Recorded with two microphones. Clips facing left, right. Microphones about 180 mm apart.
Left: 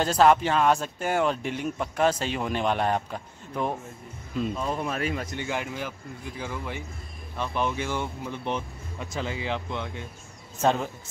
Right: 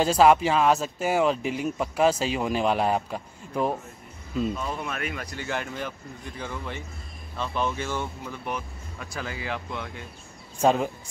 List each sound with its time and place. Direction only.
0.0 s speech: 5° right (ahead or behind)
4.6 s speech: 30° left (ahead or behind); by 8.4 s 15° left (ahead or behind)
8.5 s speech: 25° left (ahead or behind)
10.6 s a man's voice: 10° right (ahead or behind)